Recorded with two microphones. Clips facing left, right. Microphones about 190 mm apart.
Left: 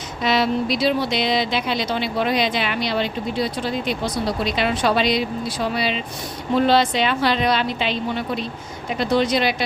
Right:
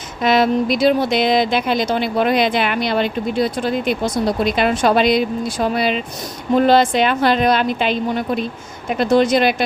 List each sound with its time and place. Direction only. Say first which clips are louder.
0.2 s speech: right 5 dB; 50° right (ahead or behind)